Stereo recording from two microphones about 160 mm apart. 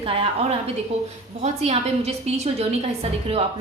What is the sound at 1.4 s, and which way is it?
A woman's voice, 40° right (ahead or behind).